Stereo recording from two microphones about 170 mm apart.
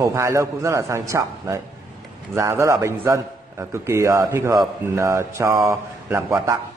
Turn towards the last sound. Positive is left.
turn(degrees=-15)  # may be behind; listen again after turning